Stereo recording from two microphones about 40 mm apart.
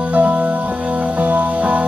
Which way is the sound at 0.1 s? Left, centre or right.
Right.